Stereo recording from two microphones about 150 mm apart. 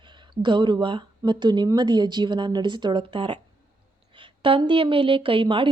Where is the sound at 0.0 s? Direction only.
30° right (ahead or behind).